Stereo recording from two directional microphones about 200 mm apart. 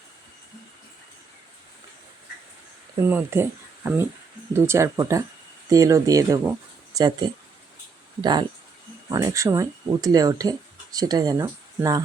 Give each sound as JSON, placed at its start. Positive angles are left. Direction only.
{"t": 3.0, "sound": "speech", "side_deg": -10}